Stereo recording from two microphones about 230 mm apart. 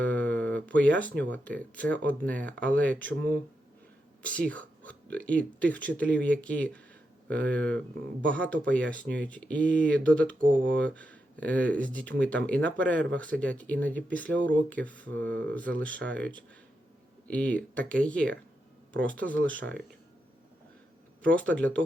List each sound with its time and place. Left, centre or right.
0.0 s a sound: centre
1.2 s speech: centre
4.2 s speech: centre
10.3 s speech: right
10.7 s speech: centre
21.2 s speech: right
21.5 s speech: centre